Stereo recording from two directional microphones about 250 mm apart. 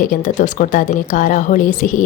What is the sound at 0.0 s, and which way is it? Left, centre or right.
A woman's voice, left.